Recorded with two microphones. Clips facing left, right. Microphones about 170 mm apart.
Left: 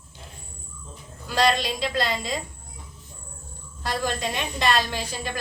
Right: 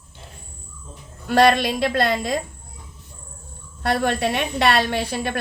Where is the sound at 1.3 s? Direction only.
60° right (ahead or behind).